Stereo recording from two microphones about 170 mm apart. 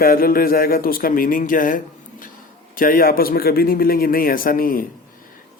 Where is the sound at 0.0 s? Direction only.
60° left (ahead or behind).